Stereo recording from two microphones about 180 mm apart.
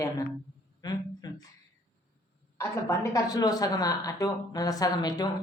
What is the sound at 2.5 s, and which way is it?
Speech, 15° left (ahead or behind).